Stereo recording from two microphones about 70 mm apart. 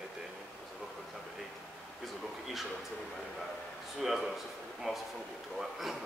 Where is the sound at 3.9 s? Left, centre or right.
Centre.